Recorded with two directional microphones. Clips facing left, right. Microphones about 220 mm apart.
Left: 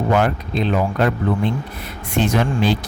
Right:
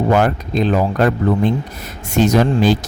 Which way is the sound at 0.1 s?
40° right (ahead or behind).